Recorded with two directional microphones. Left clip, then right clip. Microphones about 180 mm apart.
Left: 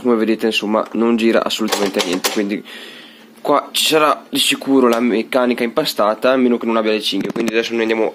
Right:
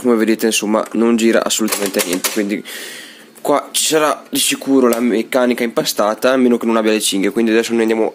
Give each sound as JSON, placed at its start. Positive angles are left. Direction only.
{"t": 0.0, "sound": "speech", "side_deg": -35}